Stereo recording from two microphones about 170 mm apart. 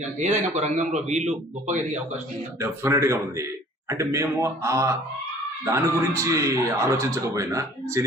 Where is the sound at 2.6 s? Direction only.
15° right (ahead or behind).